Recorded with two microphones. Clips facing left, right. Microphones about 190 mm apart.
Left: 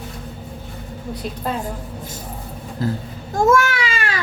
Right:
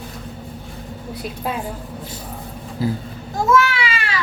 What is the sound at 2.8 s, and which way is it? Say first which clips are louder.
Speech: right 1 dB; 10° right (ahead or behind).